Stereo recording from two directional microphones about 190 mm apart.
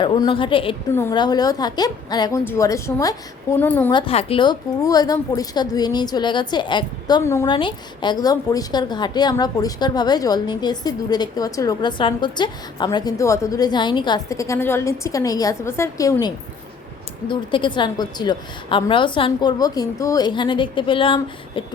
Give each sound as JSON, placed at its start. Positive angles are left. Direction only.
{"t": 0.0, "sound": "a woman's voice", "side_deg": 25}
{"t": 3.9, "sound": "a woman's voice", "side_deg": 30}